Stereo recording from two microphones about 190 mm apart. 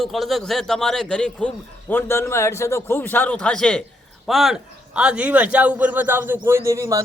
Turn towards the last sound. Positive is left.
turn(degrees=-15)  # may be behind; listen again after turning